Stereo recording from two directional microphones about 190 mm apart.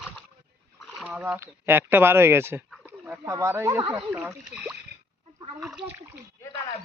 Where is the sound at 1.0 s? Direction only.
5° right (ahead or behind).